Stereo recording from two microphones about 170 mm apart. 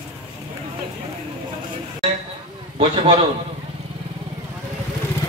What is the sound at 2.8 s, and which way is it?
Speech, 35° right (ahead or behind).